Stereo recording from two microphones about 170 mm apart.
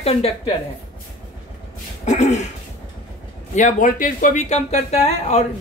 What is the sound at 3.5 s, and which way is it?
Speech, 50° left (ahead or behind).